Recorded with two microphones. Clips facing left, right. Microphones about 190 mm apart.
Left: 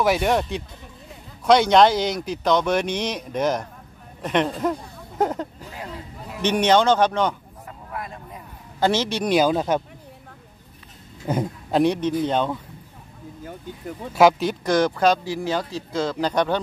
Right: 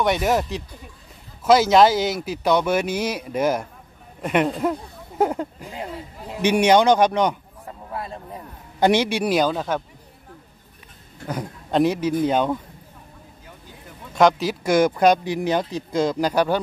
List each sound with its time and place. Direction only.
0.0 s speech: centre (ahead or behind)
5.7 s speech: 25° right (ahead or behind)
6.4 s speech: 10° right (ahead or behind)
7.9 s a sound: 30° right (ahead or behind)
8.7 s speech: 15° right (ahead or behind)
9.5 s speech: 15° left (ahead or behind)
11.7 s speech: 5° right (ahead or behind)
14.1 s speech: centre (ahead or behind)